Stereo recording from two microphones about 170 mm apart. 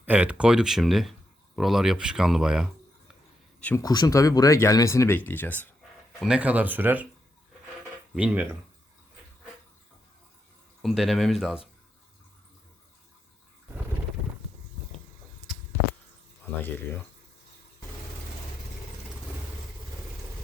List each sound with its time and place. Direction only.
0.0 s speech: 10° right (ahead or behind)
3.8 s speech: 20° left (ahead or behind)
6.1 s speech: 5° right (ahead or behind)
8.1 s speech: 10° right (ahead or behind)
10.8 s speech: centre (ahead or behind)
16.6 s speech: 10° left (ahead or behind)